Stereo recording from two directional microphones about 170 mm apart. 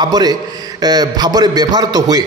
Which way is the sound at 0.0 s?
25° right (ahead or behind).